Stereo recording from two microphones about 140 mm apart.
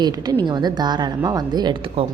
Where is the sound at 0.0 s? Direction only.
30° right (ahead or behind).